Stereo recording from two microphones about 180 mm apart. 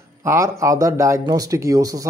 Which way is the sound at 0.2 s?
15° right (ahead or behind).